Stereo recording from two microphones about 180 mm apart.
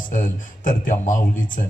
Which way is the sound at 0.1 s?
45° left (ahead or behind).